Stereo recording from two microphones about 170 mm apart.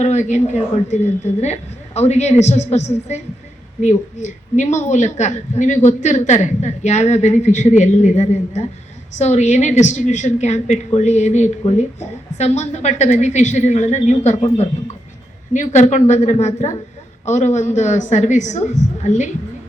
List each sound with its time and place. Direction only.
0.0 s a woman's voice: 45° left (ahead or behind)
15.5 s a woman's voice: 45° left (ahead or behind)